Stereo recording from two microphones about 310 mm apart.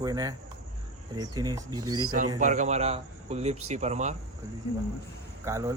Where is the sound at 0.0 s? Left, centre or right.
Centre.